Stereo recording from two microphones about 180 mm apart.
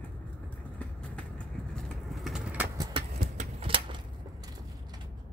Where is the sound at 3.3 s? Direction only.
30° right (ahead or behind).